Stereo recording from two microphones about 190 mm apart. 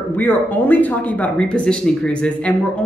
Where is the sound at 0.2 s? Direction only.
10° left (ahead or behind).